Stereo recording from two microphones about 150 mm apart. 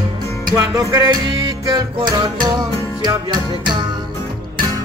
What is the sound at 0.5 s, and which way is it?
Speech, 25° right (ahead or behind).